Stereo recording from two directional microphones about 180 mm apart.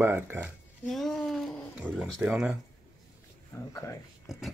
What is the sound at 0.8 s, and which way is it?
Speech, centre (ahead or behind).